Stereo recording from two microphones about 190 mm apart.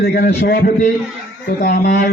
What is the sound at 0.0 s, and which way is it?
Speech, 55° left (ahead or behind).